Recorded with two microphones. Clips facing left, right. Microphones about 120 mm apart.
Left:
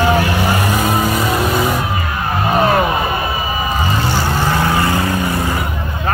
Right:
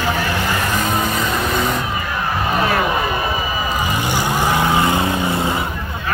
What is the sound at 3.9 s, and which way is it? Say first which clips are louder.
Vehicle: left 2 dB; 15° right (ahead or behind).